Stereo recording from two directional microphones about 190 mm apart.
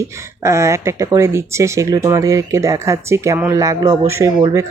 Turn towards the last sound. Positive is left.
turn(degrees=-20)  # may be behind; listen again after turning